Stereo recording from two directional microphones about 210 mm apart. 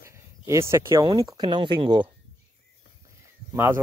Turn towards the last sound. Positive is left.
turn(degrees=-10)  # may be behind; listen again after turning